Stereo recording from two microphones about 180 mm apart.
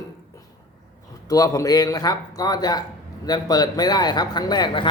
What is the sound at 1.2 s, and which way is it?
A man's voice, 20° left (ahead or behind).